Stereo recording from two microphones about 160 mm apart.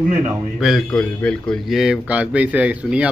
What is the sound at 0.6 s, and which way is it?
A man's voice, centre (ahead or behind).